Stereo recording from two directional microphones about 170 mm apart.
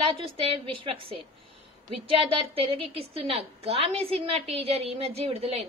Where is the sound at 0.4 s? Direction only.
35° right (ahead or behind).